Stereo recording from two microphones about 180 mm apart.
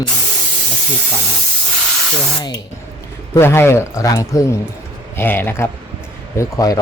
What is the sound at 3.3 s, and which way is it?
Speech, 15° left (ahead or behind).